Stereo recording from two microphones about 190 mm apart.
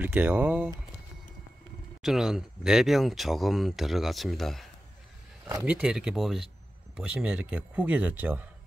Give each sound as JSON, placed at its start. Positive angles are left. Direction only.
{"t": 0.0, "sound": "speech", "side_deg": -10}
{"t": 2.0, "sound": "speech", "side_deg": 0}
{"t": 5.7, "sound": "speech", "side_deg": -5}